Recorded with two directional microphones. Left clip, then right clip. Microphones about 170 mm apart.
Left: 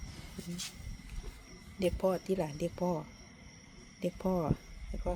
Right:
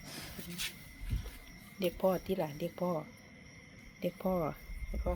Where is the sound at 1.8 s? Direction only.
20° left (ahead or behind).